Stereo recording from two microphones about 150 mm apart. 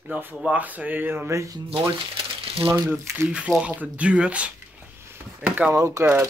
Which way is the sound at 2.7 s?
15° right (ahead or behind).